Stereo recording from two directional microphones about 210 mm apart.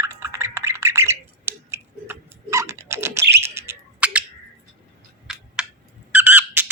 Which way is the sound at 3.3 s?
10° right (ahead or behind).